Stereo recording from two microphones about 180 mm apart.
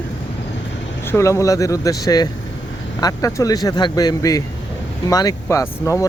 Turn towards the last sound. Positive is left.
turn(degrees=15)  # may be behind; listen again after turning